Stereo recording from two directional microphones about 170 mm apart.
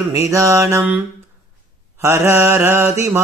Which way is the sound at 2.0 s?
15° right (ahead or behind).